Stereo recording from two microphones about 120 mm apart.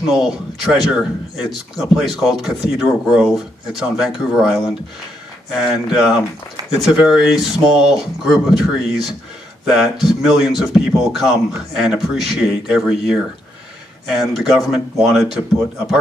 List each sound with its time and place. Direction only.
0.1 s speech: 5° right (ahead or behind)